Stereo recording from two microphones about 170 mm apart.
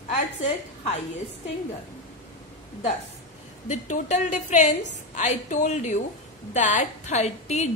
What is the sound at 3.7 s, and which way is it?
A woman's voice, 45° left (ahead or behind).